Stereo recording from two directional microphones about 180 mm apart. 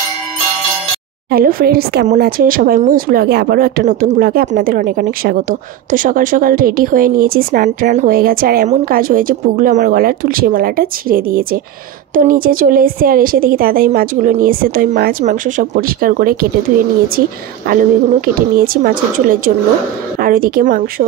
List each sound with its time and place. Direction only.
1.3 s a woman's voice: 55° right (ahead or behind)
17.6 s a woman's voice: 55° right (ahead or behind)